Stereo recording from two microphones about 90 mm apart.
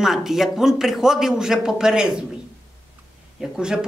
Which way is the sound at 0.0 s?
5° right (ahead or behind).